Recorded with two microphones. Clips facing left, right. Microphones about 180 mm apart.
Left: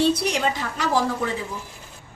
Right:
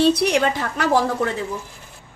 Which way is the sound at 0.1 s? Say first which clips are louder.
Right 4 dB; 60° right (ahead or behind).